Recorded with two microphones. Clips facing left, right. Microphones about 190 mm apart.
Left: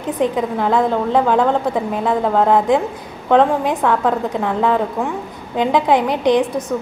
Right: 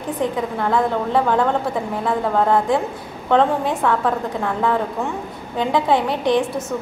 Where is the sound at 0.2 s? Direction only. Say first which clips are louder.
Left 4 dB; 20° left (ahead or behind).